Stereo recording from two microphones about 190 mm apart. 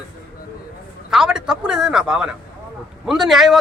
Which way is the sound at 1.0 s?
5° right (ahead or behind).